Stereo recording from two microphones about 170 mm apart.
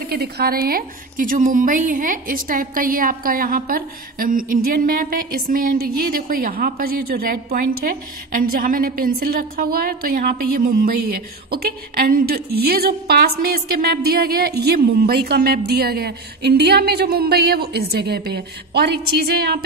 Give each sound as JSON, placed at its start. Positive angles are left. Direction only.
{"t": 0.1, "sound": "a woman's voice", "side_deg": -65}